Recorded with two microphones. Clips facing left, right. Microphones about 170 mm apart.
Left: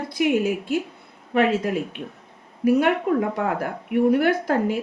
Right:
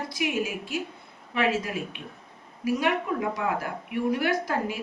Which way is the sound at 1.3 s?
50° left (ahead or behind).